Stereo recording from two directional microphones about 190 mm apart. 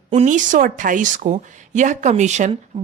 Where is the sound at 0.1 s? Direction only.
40° right (ahead or behind).